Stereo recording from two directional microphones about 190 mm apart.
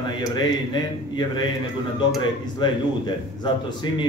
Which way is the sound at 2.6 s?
25° left (ahead or behind).